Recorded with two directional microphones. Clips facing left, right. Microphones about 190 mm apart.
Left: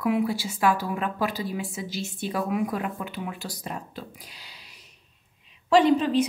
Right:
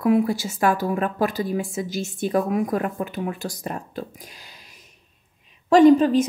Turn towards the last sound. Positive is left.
turn(degrees=-45)  # may be behind; listen again after turning